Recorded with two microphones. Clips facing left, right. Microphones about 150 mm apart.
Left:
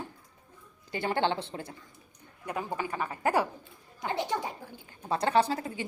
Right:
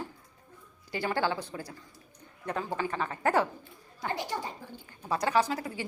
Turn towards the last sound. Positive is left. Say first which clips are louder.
# left 1 dB
turn(degrees=25)  # may be behind; listen again after turning